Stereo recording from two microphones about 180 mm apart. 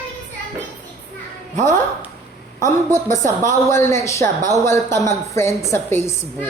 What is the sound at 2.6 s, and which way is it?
A woman's voice, 15° left (ahead or behind).